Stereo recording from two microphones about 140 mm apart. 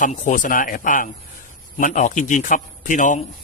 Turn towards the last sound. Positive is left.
turn(degrees=65)  # may be behind; listen again after turning